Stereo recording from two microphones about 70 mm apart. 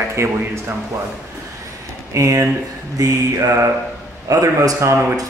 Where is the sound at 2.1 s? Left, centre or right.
Right.